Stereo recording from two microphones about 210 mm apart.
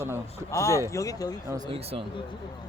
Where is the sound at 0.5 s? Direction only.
15° left (ahead or behind).